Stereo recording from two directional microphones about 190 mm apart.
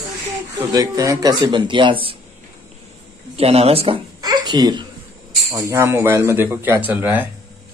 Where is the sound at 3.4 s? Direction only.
30° right (ahead or behind); by 7.3 s 10° right (ahead or behind).